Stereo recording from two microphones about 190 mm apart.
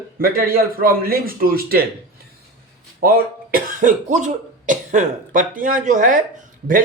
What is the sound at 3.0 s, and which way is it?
Speech, 50° right (ahead or behind).